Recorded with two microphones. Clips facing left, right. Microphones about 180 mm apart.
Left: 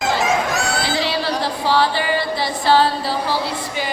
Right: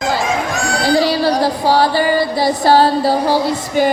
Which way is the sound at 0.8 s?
40° right (ahead or behind).